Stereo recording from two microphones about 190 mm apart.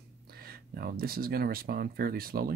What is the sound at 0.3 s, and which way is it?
Speech, 55° right (ahead or behind).